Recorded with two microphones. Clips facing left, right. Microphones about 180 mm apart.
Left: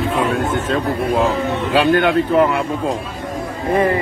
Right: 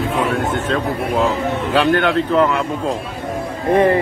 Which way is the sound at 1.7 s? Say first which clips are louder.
Left 1 dB; 10° left (ahead or behind).